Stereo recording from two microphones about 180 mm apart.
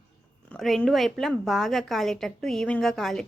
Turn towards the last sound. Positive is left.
turn(degrees=0)  # may be behind; listen again after turning